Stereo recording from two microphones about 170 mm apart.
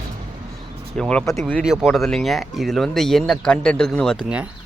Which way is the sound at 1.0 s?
5° left (ahead or behind).